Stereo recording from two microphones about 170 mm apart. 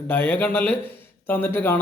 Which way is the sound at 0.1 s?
10° left (ahead or behind).